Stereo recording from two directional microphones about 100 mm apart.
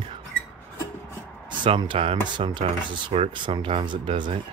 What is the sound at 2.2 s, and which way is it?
Cutlery, 50° right (ahead or behind).